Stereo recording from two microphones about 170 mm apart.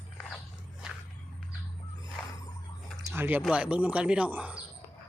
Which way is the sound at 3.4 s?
5° right (ahead or behind).